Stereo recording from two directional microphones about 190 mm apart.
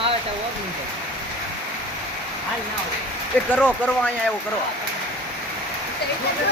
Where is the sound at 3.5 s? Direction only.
10° left (ahead or behind).